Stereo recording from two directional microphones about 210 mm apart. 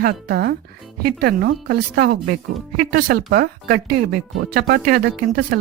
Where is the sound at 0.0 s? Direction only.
45° right (ahead or behind).